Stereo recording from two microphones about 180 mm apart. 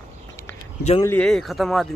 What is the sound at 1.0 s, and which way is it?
Speech, 10° left (ahead or behind).